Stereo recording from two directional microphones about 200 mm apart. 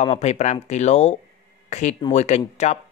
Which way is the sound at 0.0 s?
30° left (ahead or behind).